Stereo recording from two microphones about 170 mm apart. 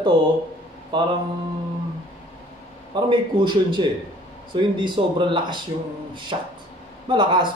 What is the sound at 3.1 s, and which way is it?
Speech, 25° right (ahead or behind).